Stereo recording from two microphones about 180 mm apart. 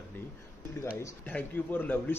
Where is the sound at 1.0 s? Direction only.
10° left (ahead or behind).